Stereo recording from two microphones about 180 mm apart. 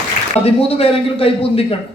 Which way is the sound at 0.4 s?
35° left (ahead or behind).